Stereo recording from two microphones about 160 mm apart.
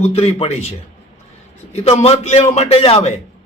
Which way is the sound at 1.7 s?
40° left (ahead or behind).